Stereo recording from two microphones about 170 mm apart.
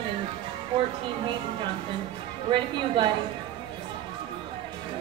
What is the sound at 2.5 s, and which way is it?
Speech, 25° right (ahead or behind).